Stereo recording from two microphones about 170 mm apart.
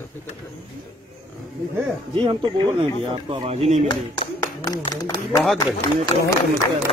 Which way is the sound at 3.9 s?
25° left (ahead or behind).